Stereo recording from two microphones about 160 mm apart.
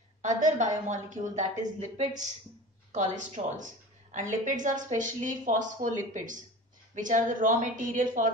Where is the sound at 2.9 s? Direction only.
50° right (ahead or behind).